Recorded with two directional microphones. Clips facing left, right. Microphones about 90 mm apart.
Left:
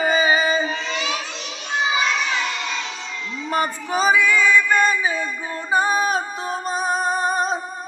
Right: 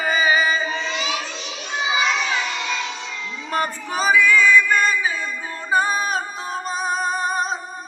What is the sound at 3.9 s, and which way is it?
Music, 25° left (ahead or behind).